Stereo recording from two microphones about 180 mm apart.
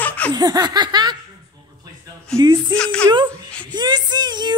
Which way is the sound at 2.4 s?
25° right (ahead or behind).